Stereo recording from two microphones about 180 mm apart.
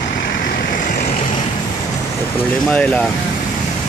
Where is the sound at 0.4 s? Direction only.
50° left (ahead or behind).